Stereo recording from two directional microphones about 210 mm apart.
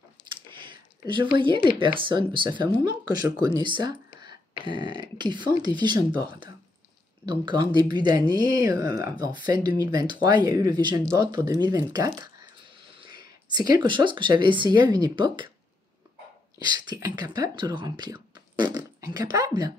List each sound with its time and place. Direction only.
0.3 s a sound: 20° right (ahead or behind)
1.8 s a woman's voice: 25° right (ahead or behind)
16.5 s speech: 20° right (ahead or behind)